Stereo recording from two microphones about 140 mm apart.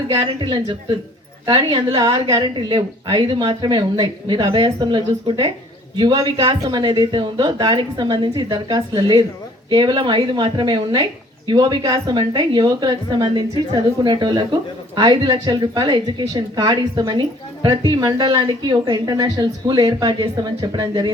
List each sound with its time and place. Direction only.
0.1 s a woman's voice: 35° right (ahead or behind)